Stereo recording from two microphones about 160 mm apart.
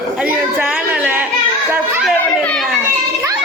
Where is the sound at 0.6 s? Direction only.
5° right (ahead or behind).